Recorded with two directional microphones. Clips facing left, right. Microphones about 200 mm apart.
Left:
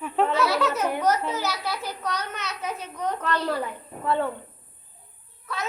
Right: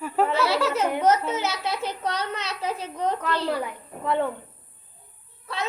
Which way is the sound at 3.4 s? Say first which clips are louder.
Right 1 dB; 10° right (ahead or behind).